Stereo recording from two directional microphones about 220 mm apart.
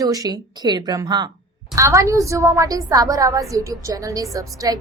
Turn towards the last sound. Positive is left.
turn(degrees=-15)  # may be behind; listen again after turning